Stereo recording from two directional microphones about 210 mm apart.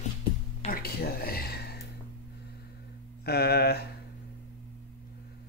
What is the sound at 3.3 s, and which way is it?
Speech, 50° left (ahead or behind).